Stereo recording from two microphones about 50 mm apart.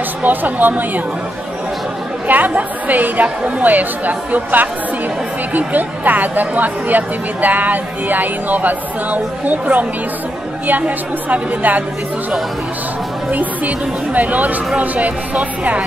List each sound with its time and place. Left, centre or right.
0.2 s speech: right
2.2 s speech: right
11.2 s speech: right
13.3 s speech: right